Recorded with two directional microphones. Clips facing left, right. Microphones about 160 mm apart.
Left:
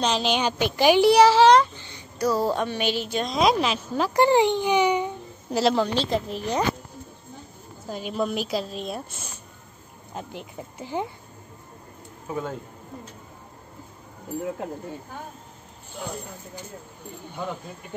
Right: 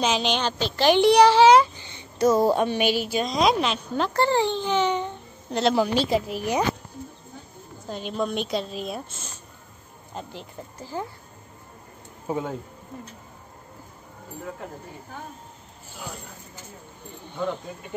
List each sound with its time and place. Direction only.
0.0 s a child's voice: centre (ahead or behind)
1.9 s a woman's voice: 20° right (ahead or behind); by 4.1 s centre (ahead or behind)
4.1 s a child's voice: 15° left (ahead or behind)
5.8 s a woman's voice: 10° right (ahead or behind)
7.9 s a child's voice: 5° left (ahead or behind)
10.8 s a child's voice: 20° left (ahead or behind)
12.3 s a man's voice: 30° right (ahead or behind)